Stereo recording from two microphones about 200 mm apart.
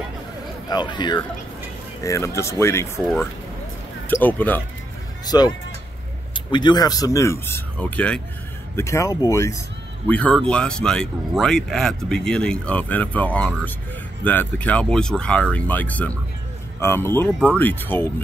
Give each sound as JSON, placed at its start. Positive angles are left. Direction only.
{"t": 0.7, "sound": "speech", "side_deg": 20}
{"t": 5.2, "sound": "speech", "side_deg": 20}